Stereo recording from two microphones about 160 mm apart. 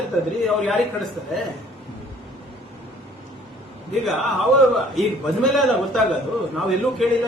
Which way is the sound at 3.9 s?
Centre (ahead or behind).